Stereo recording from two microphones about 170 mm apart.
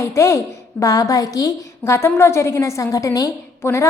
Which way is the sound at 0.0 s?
15° left (ahead or behind).